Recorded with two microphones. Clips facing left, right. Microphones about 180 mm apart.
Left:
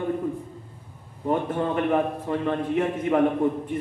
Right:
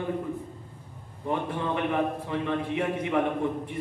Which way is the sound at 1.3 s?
45° left (ahead or behind).